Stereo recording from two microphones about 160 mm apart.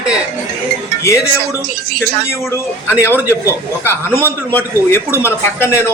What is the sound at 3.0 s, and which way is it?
A man's voice, 15° left (ahead or behind).